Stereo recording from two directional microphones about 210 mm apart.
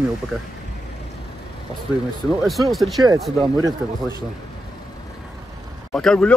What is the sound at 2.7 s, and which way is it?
Speech, centre (ahead or behind).